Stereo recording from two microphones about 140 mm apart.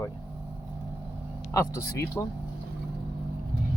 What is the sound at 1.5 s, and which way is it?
Speech, 20° left (ahead or behind).